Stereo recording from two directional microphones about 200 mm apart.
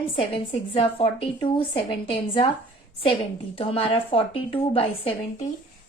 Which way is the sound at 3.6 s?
30° left (ahead or behind).